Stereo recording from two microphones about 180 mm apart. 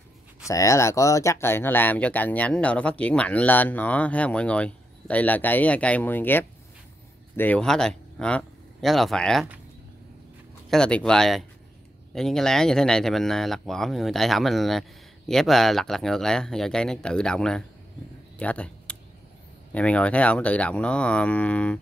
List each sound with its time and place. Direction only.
0.5 s speech: 15° left (ahead or behind)
10.7 s speech: 5° left (ahead or behind)
18.4 s a sound: 5° left (ahead or behind)
19.7 s speech: 5° left (ahead or behind)